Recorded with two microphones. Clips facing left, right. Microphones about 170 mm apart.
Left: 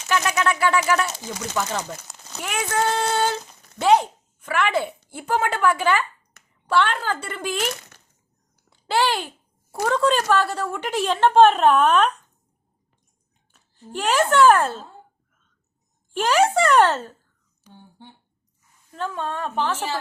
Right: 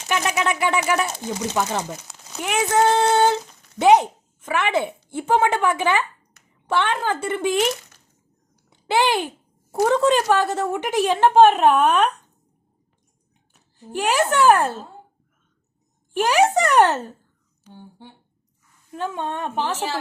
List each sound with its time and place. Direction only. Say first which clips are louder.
0.1 s a woman's voice: even; 20° right (ahead or behind)
8.7 s a child's voice: right 2 dB; 20° right (ahead or behind)
13.5 s a child's voice: right 3 dB; 15° right (ahead or behind)
16.1 s a woman's voice: right 1 dB; 15° right (ahead or behind)
18.9 s a woman's voice: right 1 dB; 15° right (ahead or behind)